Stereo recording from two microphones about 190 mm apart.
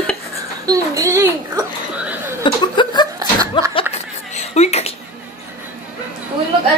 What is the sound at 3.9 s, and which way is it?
Whispering, 35° left (ahead or behind).